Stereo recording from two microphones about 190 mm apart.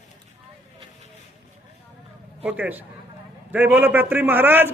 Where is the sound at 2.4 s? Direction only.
5° right (ahead or behind).